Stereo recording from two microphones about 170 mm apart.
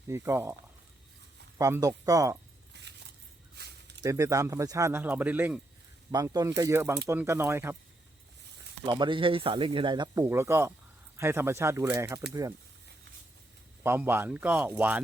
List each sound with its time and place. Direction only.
0.1 s speech: 15° right (ahead or behind)
1.5 s speech: 20° right (ahead or behind)
2.7 s keys jangling: 90° right
3.6 s a sound: 75° right (ahead or behind)
4.0 s speech: 20° right (ahead or behind)
6.1 s speech: 20° right (ahead or behind)
8.9 s speech: 30° right (ahead or behind)
13.8 s speech: 15° right (ahead or behind)